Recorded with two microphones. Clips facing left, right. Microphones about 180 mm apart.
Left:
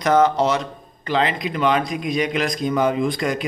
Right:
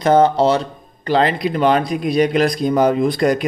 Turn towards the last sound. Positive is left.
turn(degrees=-40)  # may be behind; listen again after turning